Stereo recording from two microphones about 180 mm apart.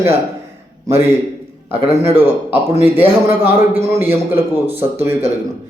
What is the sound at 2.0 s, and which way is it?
A man's voice, 10° right (ahead or behind).